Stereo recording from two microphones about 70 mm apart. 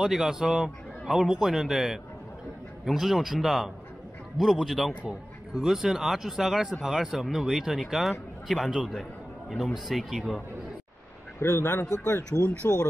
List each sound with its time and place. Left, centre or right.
0.0 s a man's voice: centre
11.3 s speech: left
12.4 s speech: right